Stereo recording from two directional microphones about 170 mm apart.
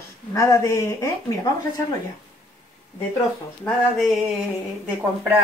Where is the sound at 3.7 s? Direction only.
Centre (ahead or behind).